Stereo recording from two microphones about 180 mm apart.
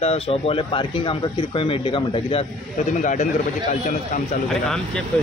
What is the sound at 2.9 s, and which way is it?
Speech, 45° left (ahead or behind).